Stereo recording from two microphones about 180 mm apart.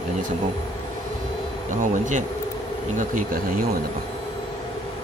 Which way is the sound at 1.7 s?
45° right (ahead or behind).